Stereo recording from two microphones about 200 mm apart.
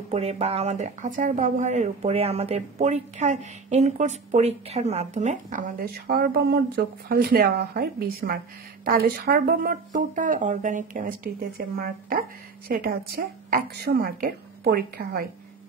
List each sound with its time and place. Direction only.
0.1 s speech: 30° right (ahead or behind); by 15.2 s 50° right (ahead or behind)